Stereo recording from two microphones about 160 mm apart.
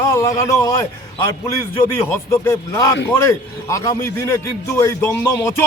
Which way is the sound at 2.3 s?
15° left (ahead or behind).